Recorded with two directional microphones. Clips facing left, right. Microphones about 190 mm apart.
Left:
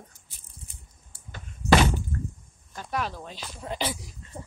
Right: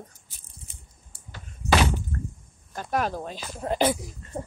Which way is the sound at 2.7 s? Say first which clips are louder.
Right 5 dB; 50° right (ahead or behind).